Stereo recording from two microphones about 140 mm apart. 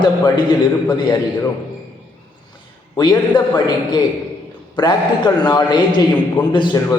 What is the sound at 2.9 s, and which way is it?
A man's voice, 30° left (ahead or behind).